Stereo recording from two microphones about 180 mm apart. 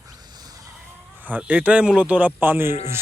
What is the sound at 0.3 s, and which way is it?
Bleat, 20° right (ahead or behind).